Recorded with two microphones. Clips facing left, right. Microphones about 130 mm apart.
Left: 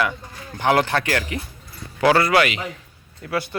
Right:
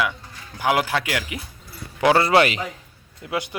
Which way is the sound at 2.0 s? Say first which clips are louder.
Even; 20° right (ahead or behind).